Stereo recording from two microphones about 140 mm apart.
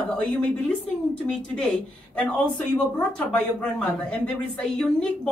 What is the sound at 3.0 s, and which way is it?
A woman's voice, 5° left (ahead or behind).